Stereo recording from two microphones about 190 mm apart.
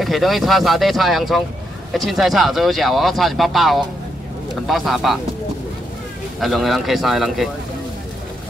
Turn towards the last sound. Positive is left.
turn(degrees=0)  # may be behind; listen again after turning